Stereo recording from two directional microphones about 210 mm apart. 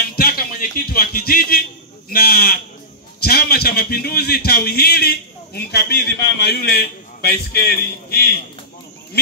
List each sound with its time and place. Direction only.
0.0 s music: 45° left (ahead or behind)
2.0 s a man's voice: 45° left (ahead or behind)